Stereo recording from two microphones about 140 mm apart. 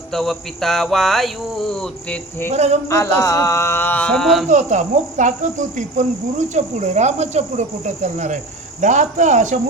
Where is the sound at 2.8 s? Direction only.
20° left (ahead or behind); by 4.5 s 5° left (ahead or behind).